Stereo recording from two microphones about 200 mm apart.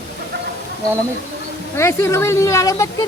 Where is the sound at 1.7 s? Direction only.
15° left (ahead or behind).